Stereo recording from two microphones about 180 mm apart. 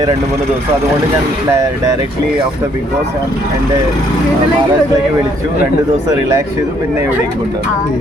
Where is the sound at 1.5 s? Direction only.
15° right (ahead or behind).